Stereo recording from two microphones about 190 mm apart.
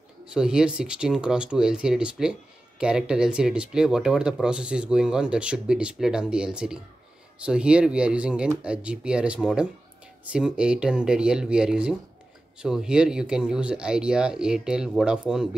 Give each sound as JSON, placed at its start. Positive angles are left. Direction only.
{"t": 0.2, "sound": "speech", "side_deg": -5}